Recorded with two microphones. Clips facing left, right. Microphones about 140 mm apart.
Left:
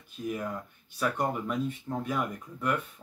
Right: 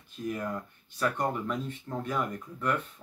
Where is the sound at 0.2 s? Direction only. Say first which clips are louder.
Even; 10° left (ahead or behind).